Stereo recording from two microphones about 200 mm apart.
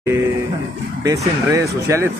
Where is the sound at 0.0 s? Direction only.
15° right (ahead or behind).